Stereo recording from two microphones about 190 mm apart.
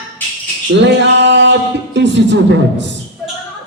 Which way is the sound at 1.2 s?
70° right (ahead or behind).